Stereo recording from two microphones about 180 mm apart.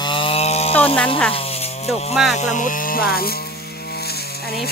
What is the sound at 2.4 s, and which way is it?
Speech, 45° left (ahead or behind).